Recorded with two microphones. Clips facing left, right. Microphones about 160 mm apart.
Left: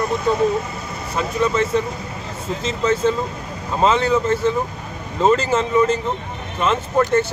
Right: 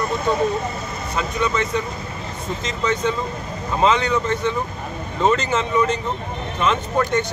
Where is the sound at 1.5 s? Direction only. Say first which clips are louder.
Left 3 dB; 30° left (ahead or behind).